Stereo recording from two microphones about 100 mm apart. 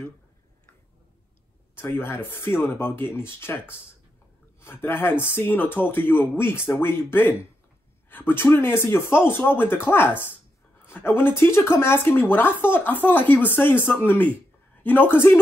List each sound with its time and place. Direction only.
2.0 s speech: 20° left (ahead or behind)